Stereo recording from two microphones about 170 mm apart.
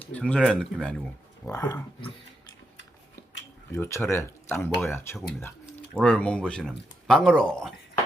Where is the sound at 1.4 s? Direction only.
15° left (ahead or behind).